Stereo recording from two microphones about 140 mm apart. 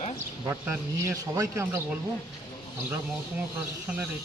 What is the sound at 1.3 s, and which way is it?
Speech, 20° right (ahead or behind).